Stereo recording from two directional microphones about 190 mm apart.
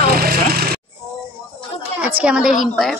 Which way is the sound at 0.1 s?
50° right (ahead or behind).